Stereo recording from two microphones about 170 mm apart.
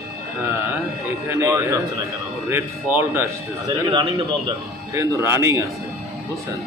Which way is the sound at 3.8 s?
25° right (ahead or behind).